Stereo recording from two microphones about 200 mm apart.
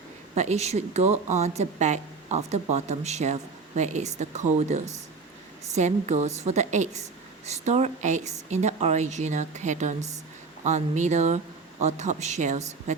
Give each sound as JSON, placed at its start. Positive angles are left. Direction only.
{"t": 0.3, "sound": "speech", "side_deg": -35}